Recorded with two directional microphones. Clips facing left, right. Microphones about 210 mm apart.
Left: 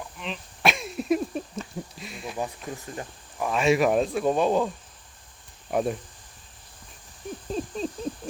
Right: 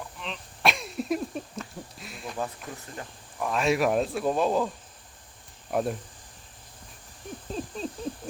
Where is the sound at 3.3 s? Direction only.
Centre (ahead or behind).